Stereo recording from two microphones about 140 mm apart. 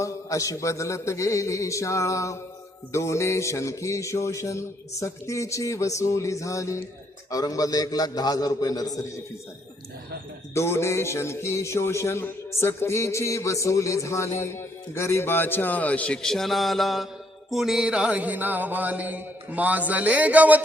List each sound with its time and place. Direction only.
0.0 s a man's voice: 25° left (ahead or behind)
10.5 s a man's voice: 20° left (ahead or behind); by 17.1 s centre (ahead or behind)
17.5 s music: centre (ahead or behind)